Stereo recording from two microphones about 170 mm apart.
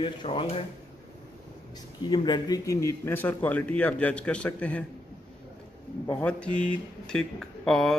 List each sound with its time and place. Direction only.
0.0 s speech: 30° left (ahead or behind)
2.0 s speech: 25° left (ahead or behind); by 4.8 s 10° left (ahead or behind)
6.0 s speech: 5° left (ahead or behind)